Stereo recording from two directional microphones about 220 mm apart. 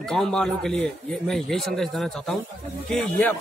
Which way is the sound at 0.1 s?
5° left (ahead or behind).